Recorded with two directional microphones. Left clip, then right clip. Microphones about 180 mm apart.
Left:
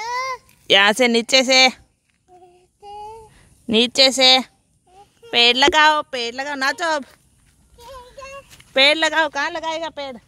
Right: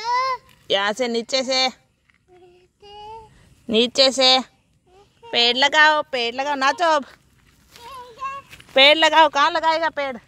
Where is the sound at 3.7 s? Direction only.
20° left (ahead or behind).